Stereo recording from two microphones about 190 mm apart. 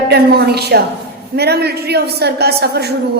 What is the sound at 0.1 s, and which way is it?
A woman's voice, 60° right (ahead or behind).